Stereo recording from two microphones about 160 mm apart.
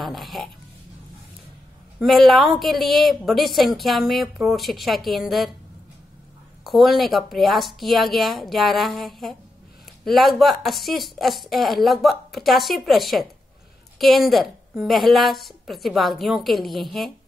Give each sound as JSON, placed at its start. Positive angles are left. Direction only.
{"t": 0.0, "sound": "a sound", "side_deg": 0}
{"t": 2.0, "sound": "a woman's voice", "side_deg": 0}
{"t": 6.6, "sound": "a woman's voice", "side_deg": 0}